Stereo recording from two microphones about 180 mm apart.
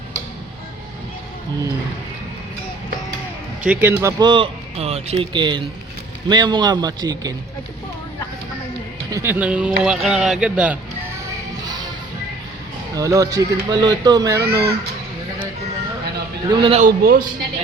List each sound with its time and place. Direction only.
3.7 s speech: 15° right (ahead or behind)
4.0 s speech: 25° right (ahead or behind)
9.0 s speech: 15° right (ahead or behind)
11.6 s music: 20° right (ahead or behind)
12.9 s speech: 20° right (ahead or behind)
16.5 s speech: 30° right (ahead or behind)
16.8 s a man's voice: 55° right (ahead or behind)